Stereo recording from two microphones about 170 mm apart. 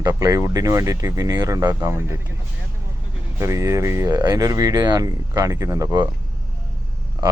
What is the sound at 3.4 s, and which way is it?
Speech, 15° right (ahead or behind).